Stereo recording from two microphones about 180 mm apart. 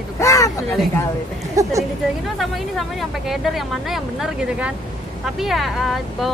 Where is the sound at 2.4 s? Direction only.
Centre (ahead or behind).